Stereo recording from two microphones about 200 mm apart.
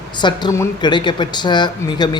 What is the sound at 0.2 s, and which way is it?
Speech, 20° left (ahead or behind).